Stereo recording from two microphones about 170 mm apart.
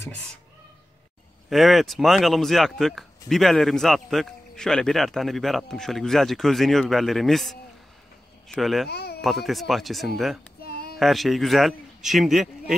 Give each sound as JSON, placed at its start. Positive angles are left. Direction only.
{"t": 1.5, "sound": "speech", "side_deg": 0}
{"t": 8.8, "sound": "speech", "side_deg": 70}
{"t": 9.2, "sound": "speech", "side_deg": 0}
{"t": 10.6, "sound": "child singing", "side_deg": 65}
{"t": 11.0, "sound": "speech", "side_deg": 0}